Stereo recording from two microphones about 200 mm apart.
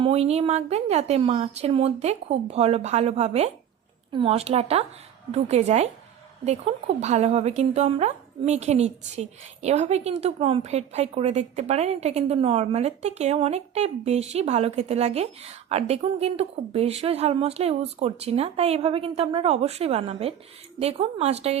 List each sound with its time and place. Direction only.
0.0 s a woman's voice: 30° right (ahead or behind)